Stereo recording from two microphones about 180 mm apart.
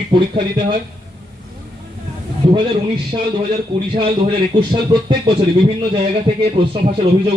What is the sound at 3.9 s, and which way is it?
Speech, 30° right (ahead or behind).